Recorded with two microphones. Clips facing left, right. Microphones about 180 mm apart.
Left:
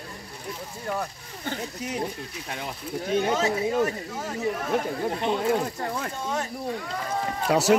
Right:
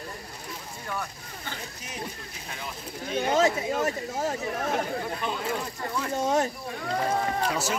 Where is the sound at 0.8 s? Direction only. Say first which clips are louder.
Left 5 dB; 40° left (ahead or behind).